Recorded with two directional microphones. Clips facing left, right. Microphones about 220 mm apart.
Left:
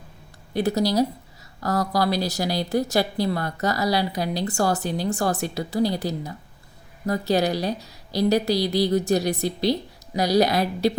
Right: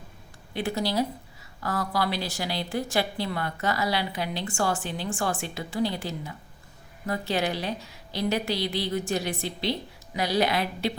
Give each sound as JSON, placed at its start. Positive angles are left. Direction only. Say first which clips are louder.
{"t": 0.5, "sound": "a woman's voice", "louder": "left 6 dB", "side_deg": 40}